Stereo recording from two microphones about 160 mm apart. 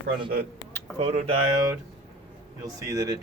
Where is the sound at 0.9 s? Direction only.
40° right (ahead or behind).